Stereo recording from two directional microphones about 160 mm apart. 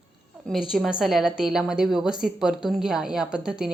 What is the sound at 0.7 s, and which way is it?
A woman's voice, centre (ahead or behind).